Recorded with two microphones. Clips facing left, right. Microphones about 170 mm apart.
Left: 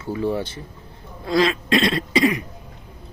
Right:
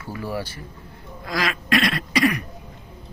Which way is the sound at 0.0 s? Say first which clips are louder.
Left 6 dB; 25° left (ahead or behind).